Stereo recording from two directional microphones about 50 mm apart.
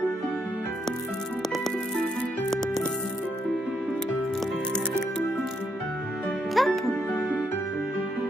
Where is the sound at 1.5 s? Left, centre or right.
Centre.